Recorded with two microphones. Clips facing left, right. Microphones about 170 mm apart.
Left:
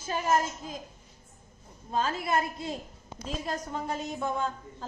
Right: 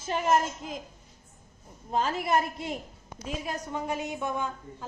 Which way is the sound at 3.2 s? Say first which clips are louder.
Even; 10° right (ahead or behind).